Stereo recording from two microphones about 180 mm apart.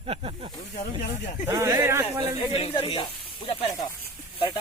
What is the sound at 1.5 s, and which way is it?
Speech, 20° right (ahead or behind).